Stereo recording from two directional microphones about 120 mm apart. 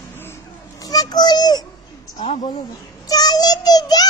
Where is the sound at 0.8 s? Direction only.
30° left (ahead or behind).